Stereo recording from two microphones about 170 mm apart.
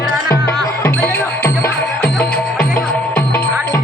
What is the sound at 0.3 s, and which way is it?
Music, 60° left (ahead or behind).